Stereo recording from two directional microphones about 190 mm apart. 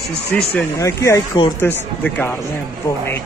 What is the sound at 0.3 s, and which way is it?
Speech, 5° left (ahead or behind).